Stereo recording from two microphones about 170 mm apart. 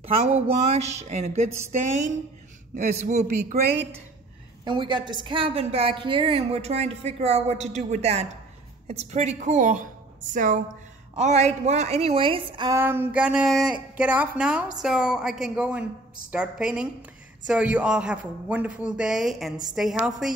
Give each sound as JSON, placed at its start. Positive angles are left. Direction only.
{"t": 0.0, "sound": "a woman's voice", "side_deg": -40}
{"t": 4.6, "sound": "a woman's voice", "side_deg": -30}
{"t": 12.7, "sound": "a sound", "side_deg": -10}
{"t": 14.8, "sound": "speech", "side_deg": -5}